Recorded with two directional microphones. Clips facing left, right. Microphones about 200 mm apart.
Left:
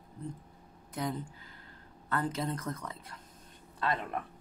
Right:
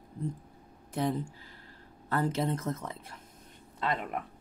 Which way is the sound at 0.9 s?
30° right (ahead or behind).